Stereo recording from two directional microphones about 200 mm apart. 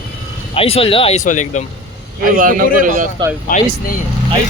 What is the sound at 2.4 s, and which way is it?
Speech, 45° right (ahead or behind).